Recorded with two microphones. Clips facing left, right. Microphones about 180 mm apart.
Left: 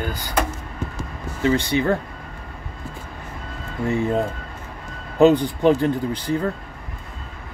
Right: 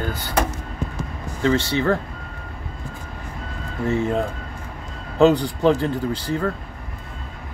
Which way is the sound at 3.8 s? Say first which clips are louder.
Even; 15° left (ahead or behind).